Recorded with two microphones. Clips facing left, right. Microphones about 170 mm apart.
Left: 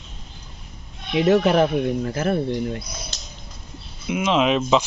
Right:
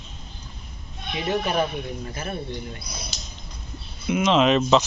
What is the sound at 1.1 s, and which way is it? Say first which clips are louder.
Speech: left 8 dB; 90° left.